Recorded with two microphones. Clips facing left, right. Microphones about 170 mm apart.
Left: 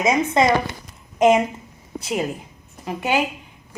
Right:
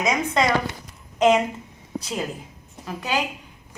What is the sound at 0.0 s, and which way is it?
Speech, 25° left (ahead or behind).